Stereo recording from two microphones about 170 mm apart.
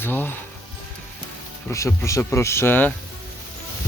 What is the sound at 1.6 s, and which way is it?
Speech, 15° left (ahead or behind).